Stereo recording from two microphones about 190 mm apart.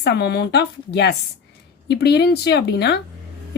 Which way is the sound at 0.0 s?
60° left (ahead or behind).